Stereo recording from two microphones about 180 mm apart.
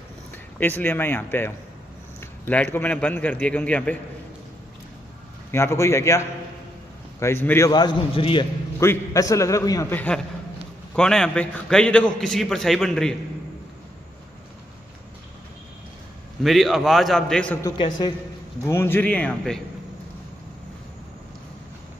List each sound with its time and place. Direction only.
0.6 s a man's voice: 10° left (ahead or behind)
5.5 s a man's voice: 15° left (ahead or behind)
8.7 s a man's voice: 15° left (ahead or behind)
16.4 s a man's voice: centre (ahead or behind)
18.6 s a man's voice: 15° left (ahead or behind)